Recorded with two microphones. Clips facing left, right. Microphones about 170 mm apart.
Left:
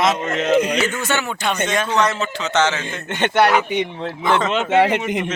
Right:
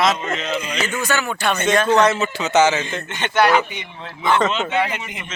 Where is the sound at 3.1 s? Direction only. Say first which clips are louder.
Left 1 dB; 65° left (ahead or behind).